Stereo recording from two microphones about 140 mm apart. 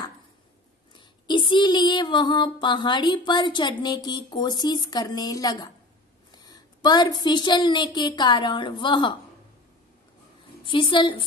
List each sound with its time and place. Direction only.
0.9 s child singing: 35° left (ahead or behind)
6.3 s a woman's voice: 30° left (ahead or behind)
10.6 s a woman's voice: 35° left (ahead or behind)